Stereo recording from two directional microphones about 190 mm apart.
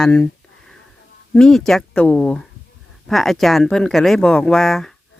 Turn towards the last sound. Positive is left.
turn(degrees=0)  # may be behind; listen again after turning